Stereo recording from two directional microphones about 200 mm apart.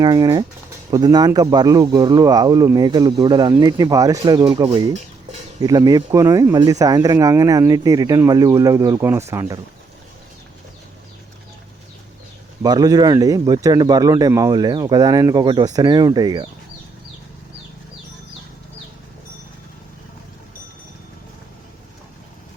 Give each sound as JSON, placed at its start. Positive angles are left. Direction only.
{"t": 0.0, "sound": "speech", "side_deg": -20}
{"t": 12.6, "sound": "speech", "side_deg": -20}